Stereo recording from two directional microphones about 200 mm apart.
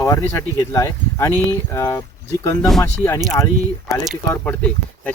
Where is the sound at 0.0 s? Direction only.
15° left (ahead or behind).